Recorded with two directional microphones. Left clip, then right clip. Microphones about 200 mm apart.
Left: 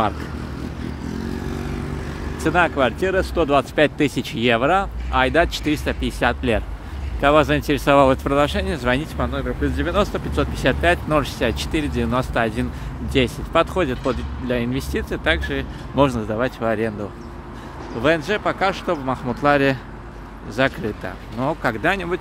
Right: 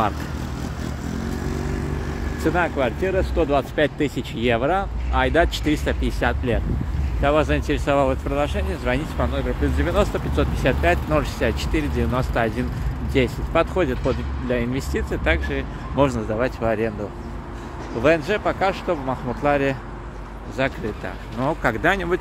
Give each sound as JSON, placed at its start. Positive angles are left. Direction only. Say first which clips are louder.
{"t": 2.4, "sound": "speech", "louder": "left 3 dB", "side_deg": 20}
{"t": 7.2, "sound": "speech", "louder": "left 4 dB", "side_deg": 30}
{"t": 9.2, "sound": "speech", "louder": "even", "side_deg": 15}
{"t": 18.0, "sound": "speech", "louder": "even", "side_deg": 15}
{"t": 21.0, "sound": "speech", "louder": "right 2 dB", "side_deg": 15}